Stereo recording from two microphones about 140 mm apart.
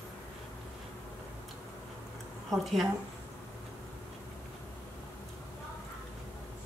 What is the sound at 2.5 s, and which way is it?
Speech, centre (ahead or behind).